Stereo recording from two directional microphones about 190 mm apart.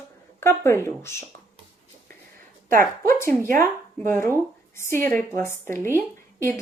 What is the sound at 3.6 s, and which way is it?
Speech, 10° left (ahead or behind).